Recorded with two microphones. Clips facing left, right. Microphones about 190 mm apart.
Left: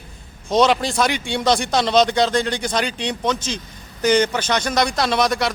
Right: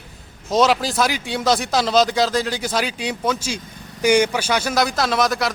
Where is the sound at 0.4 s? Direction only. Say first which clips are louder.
Left 1 dB; 5° right (ahead or behind).